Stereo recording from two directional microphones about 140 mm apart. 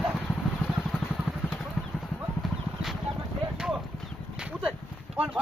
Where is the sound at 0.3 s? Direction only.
10° left (ahead or behind).